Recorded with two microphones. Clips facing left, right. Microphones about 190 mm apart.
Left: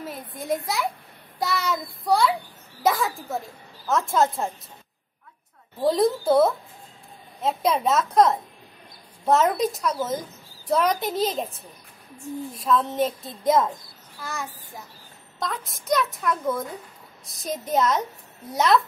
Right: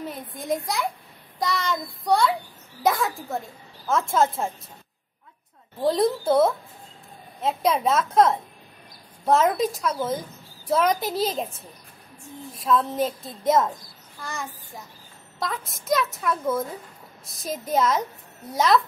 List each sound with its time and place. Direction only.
0.0 s a child's voice: centre (ahead or behind)
5.8 s a woman's voice: centre (ahead or behind)